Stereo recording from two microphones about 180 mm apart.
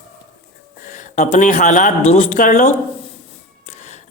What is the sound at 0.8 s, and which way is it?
Speech, 45° left (ahead or behind).